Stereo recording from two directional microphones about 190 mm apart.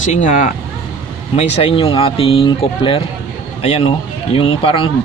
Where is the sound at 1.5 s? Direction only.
30° left (ahead or behind).